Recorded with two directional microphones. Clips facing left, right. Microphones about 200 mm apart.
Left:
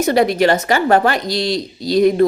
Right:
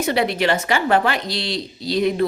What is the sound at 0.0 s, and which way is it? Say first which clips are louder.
A woman's voice: left 6 dB; 45° left (ahead or behind).